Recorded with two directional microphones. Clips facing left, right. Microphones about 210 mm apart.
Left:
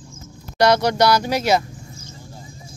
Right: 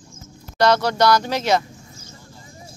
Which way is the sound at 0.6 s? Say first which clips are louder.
Left 1 dB; 15° left (ahead or behind).